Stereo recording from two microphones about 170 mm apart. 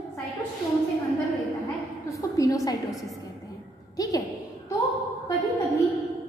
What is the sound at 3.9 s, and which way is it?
Speech, 20° left (ahead or behind).